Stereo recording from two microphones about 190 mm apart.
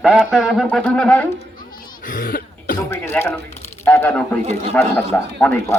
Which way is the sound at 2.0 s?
45° left (ahead or behind).